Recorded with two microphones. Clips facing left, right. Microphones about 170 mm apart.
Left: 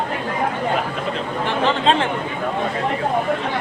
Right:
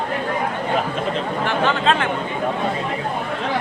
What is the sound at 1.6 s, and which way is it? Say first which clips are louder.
Speech: left 2 dB; 30° left (ahead or behind).